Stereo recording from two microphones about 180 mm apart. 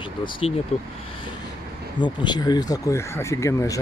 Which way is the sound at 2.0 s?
25° left (ahead or behind).